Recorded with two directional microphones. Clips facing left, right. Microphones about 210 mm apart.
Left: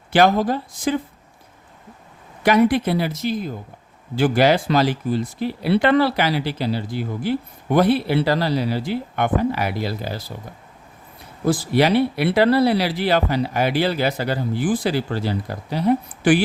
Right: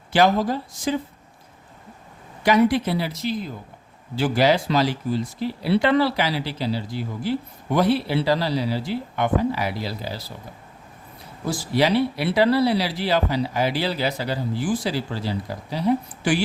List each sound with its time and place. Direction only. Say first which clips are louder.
0.1 s speech: left 2 dB; 55° left (ahead or behind)
2.4 s speech: left 2 dB; 55° left (ahead or behind)
11.4 s speech: left 4 dB; 60° left (ahead or behind)